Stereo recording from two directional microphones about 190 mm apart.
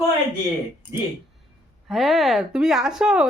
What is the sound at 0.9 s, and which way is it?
Speech, 15° right (ahead or behind).